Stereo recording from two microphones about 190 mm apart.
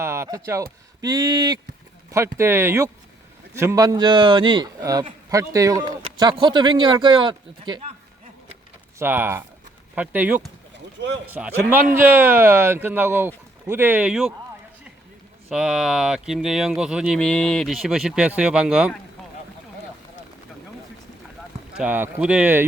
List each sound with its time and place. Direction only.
0.0 s speech: 15° right (ahead or behind)
9.0 s speech: 10° right (ahead or behind)
15.4 s speech: 5° right (ahead or behind)
21.8 s speech: 10° right (ahead or behind)